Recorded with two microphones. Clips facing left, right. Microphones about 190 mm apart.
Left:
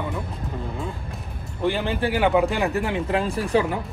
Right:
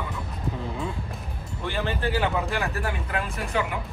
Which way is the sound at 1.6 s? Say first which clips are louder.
Left 5 dB; 15° left (ahead or behind).